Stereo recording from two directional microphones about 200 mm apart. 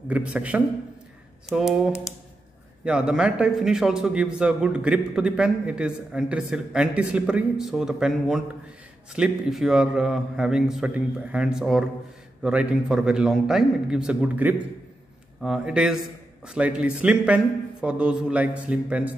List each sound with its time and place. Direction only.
0.1 s a man's voice: 5° right (ahead or behind)